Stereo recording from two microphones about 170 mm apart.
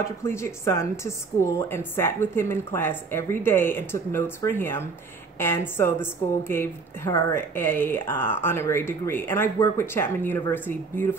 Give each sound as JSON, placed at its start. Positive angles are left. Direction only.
{"t": 0.0, "sound": "speech", "side_deg": 15}